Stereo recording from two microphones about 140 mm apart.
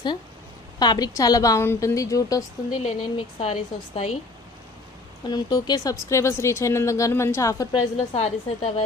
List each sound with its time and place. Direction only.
0.8 s speech: 30° left (ahead or behind)
2.8 s speech: 50° left (ahead or behind)
5.3 s speech: 30° left (ahead or behind)
7.7 s speech: 45° left (ahead or behind)